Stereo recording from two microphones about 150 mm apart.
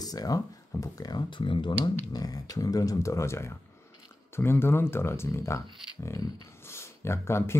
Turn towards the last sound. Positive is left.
turn(degrees=15)  # may be behind; listen again after turning